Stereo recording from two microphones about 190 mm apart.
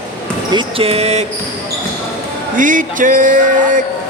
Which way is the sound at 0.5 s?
30° right (ahead or behind).